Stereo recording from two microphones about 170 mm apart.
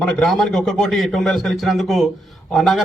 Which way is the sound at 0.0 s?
5° left (ahead or behind).